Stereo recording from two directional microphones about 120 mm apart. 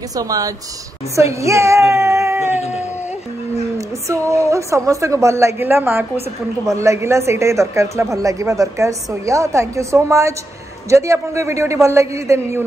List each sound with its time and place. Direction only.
0.1 s a woman's voice: 30° right (ahead or behind)
3.7 s a woman's voice: 25° right (ahead or behind)